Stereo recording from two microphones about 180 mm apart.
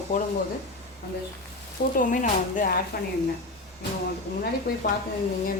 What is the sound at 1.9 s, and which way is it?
Speech, 45° left (ahead or behind).